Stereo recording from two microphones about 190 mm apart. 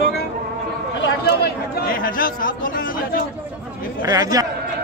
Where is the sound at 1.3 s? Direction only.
55° left (ahead or behind).